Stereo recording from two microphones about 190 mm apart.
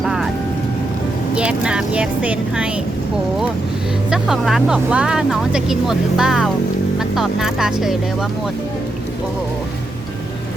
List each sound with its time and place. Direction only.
0.0 s vehicle: centre (ahead or behind)
1.4 s speech: 5° right (ahead or behind)
4.1 s speech: centre (ahead or behind)